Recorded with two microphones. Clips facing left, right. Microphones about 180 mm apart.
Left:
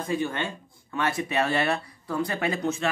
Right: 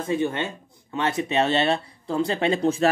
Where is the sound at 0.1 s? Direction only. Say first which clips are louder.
Right 4 dB; 20° right (ahead or behind).